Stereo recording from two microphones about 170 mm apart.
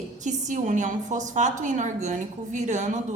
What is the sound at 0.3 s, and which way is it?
A woman's voice, 45° right (ahead or behind).